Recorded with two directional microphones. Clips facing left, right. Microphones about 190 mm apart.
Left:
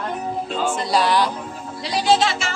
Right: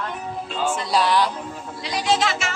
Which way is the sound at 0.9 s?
Centre (ahead or behind).